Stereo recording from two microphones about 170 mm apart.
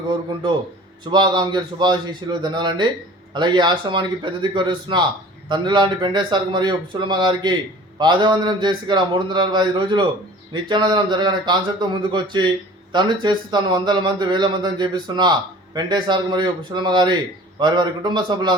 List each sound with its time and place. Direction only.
1.1 s speech: 25° right (ahead or behind)